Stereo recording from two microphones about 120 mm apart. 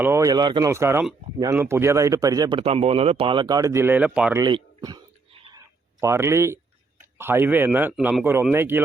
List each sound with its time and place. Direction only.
0.0 s speech: 20° right (ahead or behind)
0.3 s speech: 35° right (ahead or behind)
0.7 s speech: 20° right (ahead or behind)
2.6 s speech: 55° right (ahead or behind); by 4.4 s 10° right (ahead or behind)
4.4 s a man's voice: 35° right (ahead or behind)
5.3 s a sound: 50° right (ahead or behind)
6.0 s speech: 25° right (ahead or behind)